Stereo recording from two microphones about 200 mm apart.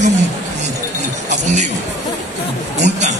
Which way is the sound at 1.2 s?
35° right (ahead or behind).